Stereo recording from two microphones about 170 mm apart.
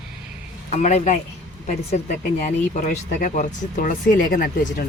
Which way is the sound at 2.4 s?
50° left (ahead or behind).